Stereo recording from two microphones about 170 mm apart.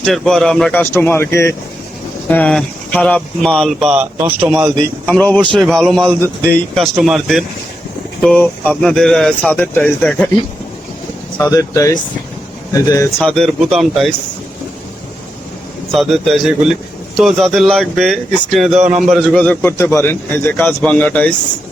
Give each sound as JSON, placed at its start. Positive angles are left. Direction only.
{"t": 0.0, "sound": "a man's voice", "side_deg": 5}
{"t": 3.9, "sound": "speech", "side_deg": -10}
{"t": 5.0, "sound": "a man's voice", "side_deg": 10}
{"t": 11.3, "sound": "speech", "side_deg": 20}
{"t": 13.1, "sound": "speech", "side_deg": 0}
{"t": 15.9, "sound": "a man's voice", "side_deg": 0}